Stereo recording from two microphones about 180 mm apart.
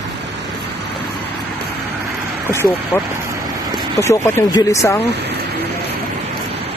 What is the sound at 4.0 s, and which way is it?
Speech, 15° left (ahead or behind).